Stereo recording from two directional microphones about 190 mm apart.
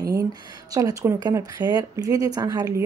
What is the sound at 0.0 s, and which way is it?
Speech, 15° right (ahead or behind).